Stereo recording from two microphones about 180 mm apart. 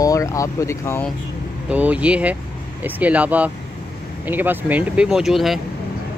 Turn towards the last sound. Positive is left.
turn(degrees=0)  # may be behind; listen again after turning